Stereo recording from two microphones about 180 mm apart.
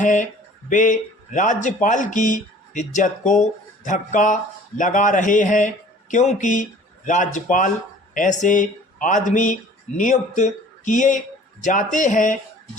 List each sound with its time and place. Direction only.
0.0 s a man's voice: 45° left (ahead or behind)